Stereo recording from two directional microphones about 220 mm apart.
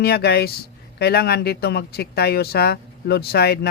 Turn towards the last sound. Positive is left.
turn(degrees=45)  # may be behind; listen again after turning